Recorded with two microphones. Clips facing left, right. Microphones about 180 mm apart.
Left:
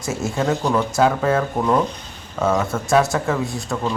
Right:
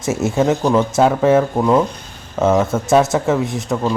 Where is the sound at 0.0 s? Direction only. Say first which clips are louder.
Right 6 dB; 25° right (ahead or behind).